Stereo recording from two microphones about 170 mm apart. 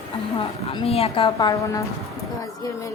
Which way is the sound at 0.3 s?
35° left (ahead or behind).